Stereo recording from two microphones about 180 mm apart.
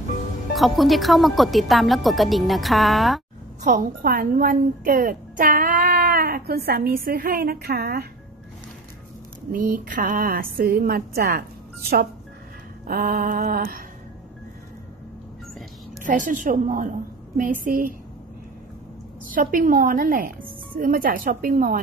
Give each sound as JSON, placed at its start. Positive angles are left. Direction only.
{"t": 0.6, "sound": "speech", "side_deg": 0}
{"t": 3.6, "sound": "a woman's voice", "side_deg": -50}
{"t": 9.5, "sound": "speech", "side_deg": -50}
{"t": 12.8, "sound": "speech", "side_deg": -55}
{"t": 16.0, "sound": "speech", "side_deg": -45}
{"t": 19.2, "sound": "speech", "side_deg": -50}